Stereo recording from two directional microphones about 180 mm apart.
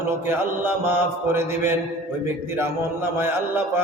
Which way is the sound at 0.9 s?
10° right (ahead or behind).